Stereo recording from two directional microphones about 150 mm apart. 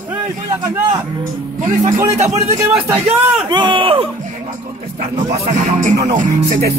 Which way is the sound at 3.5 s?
35° right (ahead or behind).